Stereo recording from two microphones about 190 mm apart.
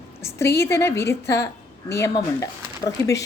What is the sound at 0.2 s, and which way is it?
A woman's voice, 15° left (ahead or behind).